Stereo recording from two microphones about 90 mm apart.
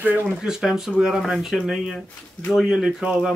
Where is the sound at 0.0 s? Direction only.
20° right (ahead or behind).